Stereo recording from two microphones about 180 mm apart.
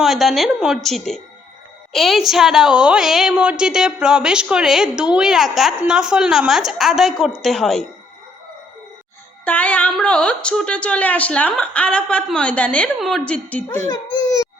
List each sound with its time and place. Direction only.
0.0 s a woman's voice: centre (ahead or behind)
9.4 s speech: 10° left (ahead or behind)
13.9 s a sound: 20° left (ahead or behind)